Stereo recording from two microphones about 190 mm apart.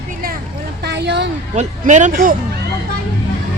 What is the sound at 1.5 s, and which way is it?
Speech, 40° right (ahead or behind).